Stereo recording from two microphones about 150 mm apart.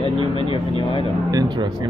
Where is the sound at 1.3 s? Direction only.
25° right (ahead or behind).